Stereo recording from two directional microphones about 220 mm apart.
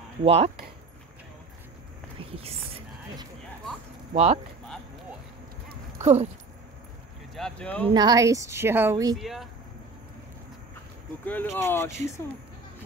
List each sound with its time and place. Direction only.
0.2 s speech: 25° right (ahead or behind)
2.3 s a sound: 25° right (ahead or behind)
4.1 s speech: 30° right (ahead or behind)
5.9 s a sound: 30° right (ahead or behind)
7.3 s speech: 5° left (ahead or behind)
7.9 s a woman's voice: 20° right (ahead or behind)
9.1 s speech: centre (ahead or behind)
11.5 s speech: 10° left (ahead or behind)